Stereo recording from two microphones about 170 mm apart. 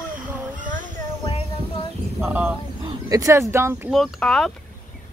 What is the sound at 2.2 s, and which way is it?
Speech, 15° right (ahead or behind).